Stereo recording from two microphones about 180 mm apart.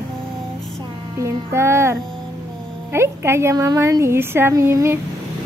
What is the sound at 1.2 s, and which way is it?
A woman's voice, 15° right (ahead or behind).